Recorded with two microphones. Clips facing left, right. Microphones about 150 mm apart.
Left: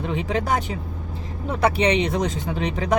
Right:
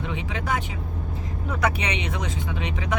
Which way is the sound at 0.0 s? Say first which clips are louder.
Left 6 dB; 40° left (ahead or behind).